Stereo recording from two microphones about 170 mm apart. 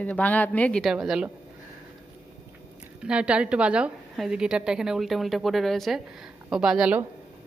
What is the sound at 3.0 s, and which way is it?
Speech, 5° right (ahead or behind).